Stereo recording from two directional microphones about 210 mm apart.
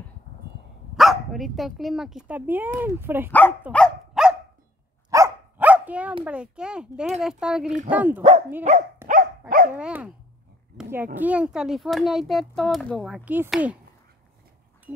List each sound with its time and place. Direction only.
0.9 s speech: centre (ahead or behind)
3.3 s speech: 10° left (ahead or behind)
3.7 s dog: centre (ahead or behind)
6.2 s a child's voice: 5° right (ahead or behind)
8.2 s dog: 35° right (ahead or behind)
9.8 s a child's voice: 5° right (ahead or behind)